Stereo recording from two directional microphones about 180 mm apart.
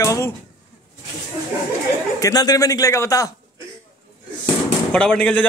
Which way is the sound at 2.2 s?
20° left (ahead or behind).